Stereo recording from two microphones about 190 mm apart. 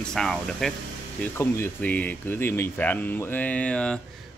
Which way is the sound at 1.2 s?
10° left (ahead or behind).